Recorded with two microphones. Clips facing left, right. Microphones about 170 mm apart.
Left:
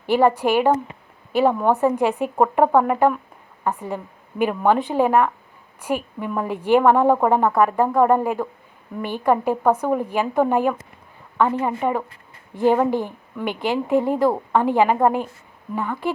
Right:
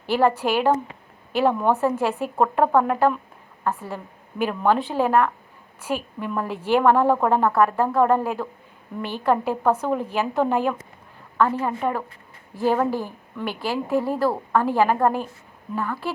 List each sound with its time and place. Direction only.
0.0 s a woman's voice: 15° left (ahead or behind)